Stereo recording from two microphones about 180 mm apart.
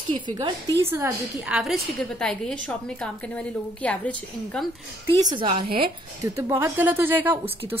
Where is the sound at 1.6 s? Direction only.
Centre (ahead or behind).